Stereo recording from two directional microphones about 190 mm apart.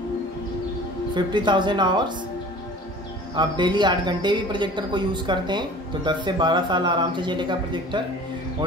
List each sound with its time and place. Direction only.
1.1 s speech: 25° right (ahead or behind)
3.3 s speech: 25° right (ahead or behind)